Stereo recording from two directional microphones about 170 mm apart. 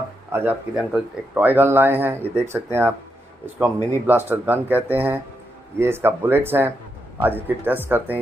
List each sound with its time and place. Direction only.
0.3 s speech: 10° right (ahead or behind)